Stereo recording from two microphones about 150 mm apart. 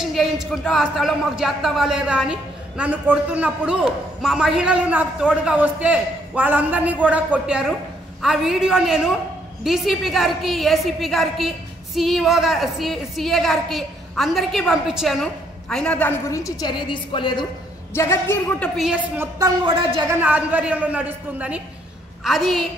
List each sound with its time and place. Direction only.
0.1 s a woman's voice: centre (ahead or behind)
16.3 s a woman's voice: 20° left (ahead or behind)
17.9 s a woman's voice: 15° left (ahead or behind)
19.1 s a woman's voice: 25° right (ahead or behind)
19.7 s speech: 35° right (ahead or behind)
20.1 s a man's voice: 10° right (ahead or behind)